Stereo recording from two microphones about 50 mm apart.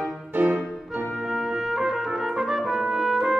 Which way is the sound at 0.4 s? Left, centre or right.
Right.